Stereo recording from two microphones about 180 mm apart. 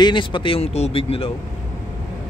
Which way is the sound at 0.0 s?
25° left (ahead or behind).